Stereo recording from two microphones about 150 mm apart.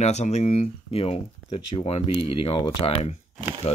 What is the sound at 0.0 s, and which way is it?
Speech, 50° left (ahead or behind).